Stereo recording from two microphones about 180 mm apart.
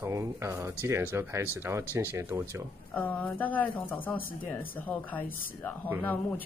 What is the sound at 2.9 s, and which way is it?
A woman's voice, 10° left (ahead or behind).